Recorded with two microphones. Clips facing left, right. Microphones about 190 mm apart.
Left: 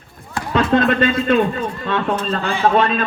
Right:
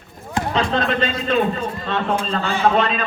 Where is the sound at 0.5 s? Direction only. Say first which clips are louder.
Left 6 dB; 55° left (ahead or behind).